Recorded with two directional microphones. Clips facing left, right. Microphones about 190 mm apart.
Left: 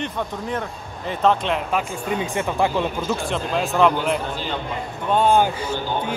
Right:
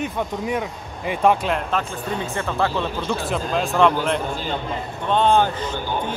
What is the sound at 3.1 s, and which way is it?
Speech, centre (ahead or behind).